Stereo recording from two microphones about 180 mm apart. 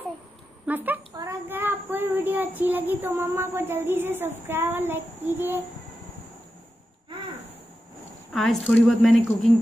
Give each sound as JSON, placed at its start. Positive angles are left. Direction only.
{"t": 0.7, "sound": "a child's voice", "side_deg": -10}
{"t": 1.1, "sound": "child singing", "side_deg": -15}
{"t": 8.3, "sound": "a woman's voice", "side_deg": 0}